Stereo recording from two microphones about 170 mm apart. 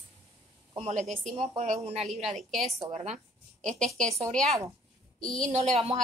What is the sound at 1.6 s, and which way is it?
Speech, 40° right (ahead or behind).